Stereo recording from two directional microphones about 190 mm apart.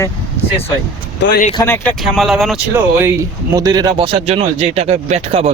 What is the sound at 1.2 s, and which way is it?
Speech, 65° left (ahead or behind).